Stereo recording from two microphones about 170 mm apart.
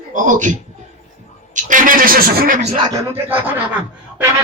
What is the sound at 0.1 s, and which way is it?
A man's voice, 50° right (ahead or behind).